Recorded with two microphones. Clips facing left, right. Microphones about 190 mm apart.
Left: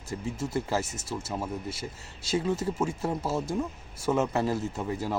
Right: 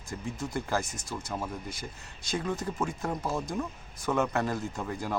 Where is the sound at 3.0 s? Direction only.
5° left (ahead or behind).